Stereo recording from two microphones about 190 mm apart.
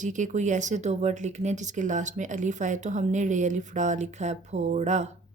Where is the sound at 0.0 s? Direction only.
40° right (ahead or behind).